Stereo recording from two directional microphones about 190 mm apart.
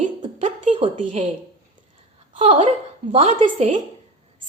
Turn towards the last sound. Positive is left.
turn(degrees=-35)  # may be behind; listen again after turning